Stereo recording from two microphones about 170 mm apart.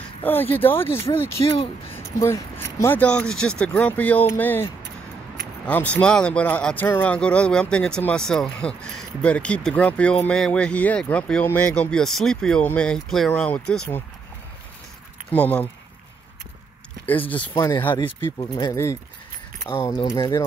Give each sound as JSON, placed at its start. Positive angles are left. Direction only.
{"t": 0.2, "sound": "speech", "side_deg": 10}
{"t": 1.5, "sound": "speech", "side_deg": 35}
{"t": 2.1, "sound": "speech", "side_deg": 15}
{"t": 5.7, "sound": "speech", "side_deg": 10}
{"t": 15.3, "sound": "speech", "side_deg": 10}
{"t": 17.6, "sound": "speech", "side_deg": 15}